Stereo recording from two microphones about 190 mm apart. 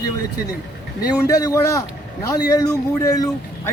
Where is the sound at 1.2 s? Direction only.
20° left (ahead or behind).